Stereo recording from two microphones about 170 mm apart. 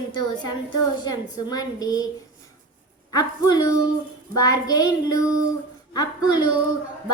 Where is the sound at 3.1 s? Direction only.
20° left (ahead or behind).